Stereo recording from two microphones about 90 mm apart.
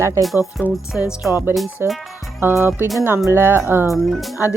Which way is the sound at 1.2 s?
25° right (ahead or behind).